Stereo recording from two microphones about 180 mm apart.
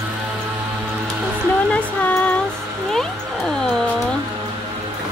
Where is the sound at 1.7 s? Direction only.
10° left (ahead or behind).